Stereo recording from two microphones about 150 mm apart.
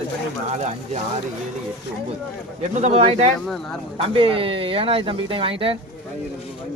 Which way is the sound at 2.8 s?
45° right (ahead or behind).